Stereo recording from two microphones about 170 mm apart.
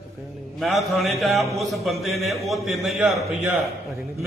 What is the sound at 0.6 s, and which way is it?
A man's voice, centre (ahead or behind).